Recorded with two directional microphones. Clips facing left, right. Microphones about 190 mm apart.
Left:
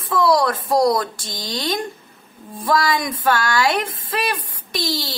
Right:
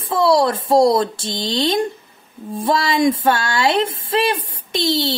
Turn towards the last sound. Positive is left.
turn(degrees=-25)  # may be behind; listen again after turning